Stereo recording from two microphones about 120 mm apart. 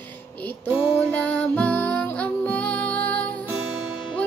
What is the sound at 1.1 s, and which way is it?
Music, 10° left (ahead or behind).